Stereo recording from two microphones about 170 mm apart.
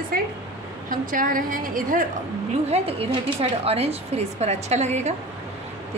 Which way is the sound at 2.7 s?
35° right (ahead or behind).